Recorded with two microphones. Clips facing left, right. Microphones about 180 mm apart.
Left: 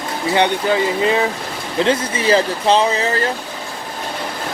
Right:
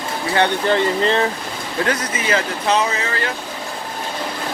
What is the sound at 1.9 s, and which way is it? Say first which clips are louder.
Speech: left 6 dB; 30° left (ahead or behind).